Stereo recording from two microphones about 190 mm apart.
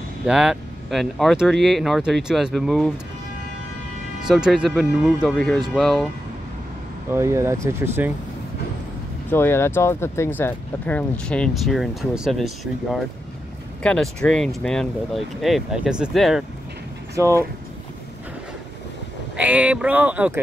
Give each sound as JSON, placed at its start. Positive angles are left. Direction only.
{"t": 0.3, "sound": "speech", "side_deg": -5}
{"t": 4.3, "sound": "speech", "side_deg": -5}
{"t": 7.1, "sound": "speech", "side_deg": -15}
{"t": 9.3, "sound": "speech", "side_deg": 10}
{"t": 17.1, "sound": "speech", "side_deg": -15}
{"t": 19.3, "sound": "speech", "side_deg": -5}